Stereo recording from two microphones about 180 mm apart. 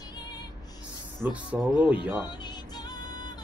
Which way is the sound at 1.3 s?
10° right (ahead or behind).